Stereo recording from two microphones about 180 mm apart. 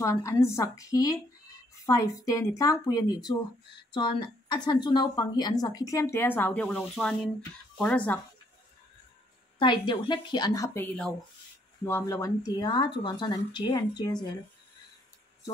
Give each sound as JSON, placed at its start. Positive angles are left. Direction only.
{"t": 0.0, "sound": "a woman's voice", "side_deg": 15}
{"t": 9.6, "sound": "a woman's voice", "side_deg": 25}